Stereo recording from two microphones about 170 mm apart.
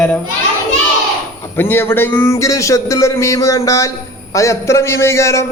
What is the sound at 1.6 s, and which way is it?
A man's voice, 15° left (ahead or behind).